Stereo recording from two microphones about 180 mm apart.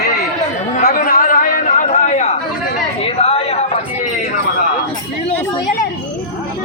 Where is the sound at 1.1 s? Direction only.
50° left (ahead or behind).